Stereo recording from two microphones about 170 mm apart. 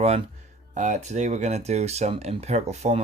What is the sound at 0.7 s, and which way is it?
Speech, 45° right (ahead or behind).